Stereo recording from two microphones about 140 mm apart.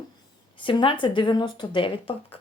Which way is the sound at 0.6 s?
35° left (ahead or behind).